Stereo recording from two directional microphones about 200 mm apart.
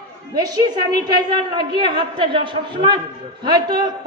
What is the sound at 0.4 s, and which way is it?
A man's voice, 20° right (ahead or behind).